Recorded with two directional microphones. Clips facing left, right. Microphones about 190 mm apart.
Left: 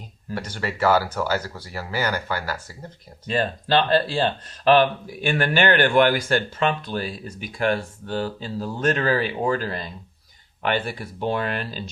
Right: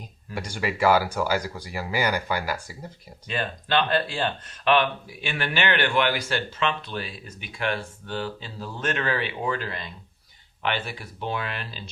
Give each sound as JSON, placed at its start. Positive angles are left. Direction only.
{"t": 0.3, "sound": "speech", "side_deg": -10}
{"t": 3.2, "sound": "speech", "side_deg": 35}